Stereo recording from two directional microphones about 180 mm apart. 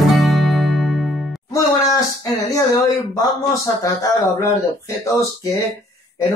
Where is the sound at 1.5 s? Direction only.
20° left (ahead or behind).